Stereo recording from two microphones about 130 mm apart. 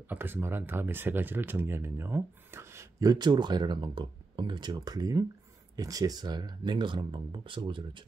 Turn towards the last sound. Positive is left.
turn(degrees=-40)  # may be behind; listen again after turning